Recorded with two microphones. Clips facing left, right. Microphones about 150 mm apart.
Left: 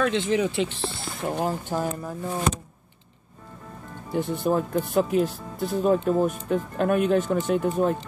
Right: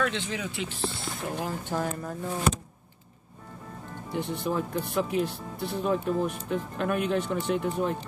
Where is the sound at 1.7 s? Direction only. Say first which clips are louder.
Left 3 dB; 15° left (ahead or behind).